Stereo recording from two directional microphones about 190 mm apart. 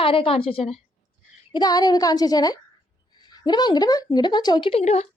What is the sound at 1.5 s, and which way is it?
A woman's voice, 20° left (ahead or behind).